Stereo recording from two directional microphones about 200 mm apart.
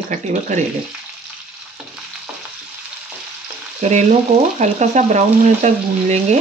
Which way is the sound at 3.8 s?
35° right (ahead or behind).